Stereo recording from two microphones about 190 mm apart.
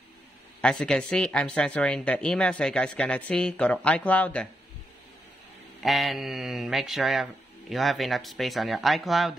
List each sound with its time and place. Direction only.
0.6 s speech: 5° left (ahead or behind)
5.8 s speech: centre (ahead or behind)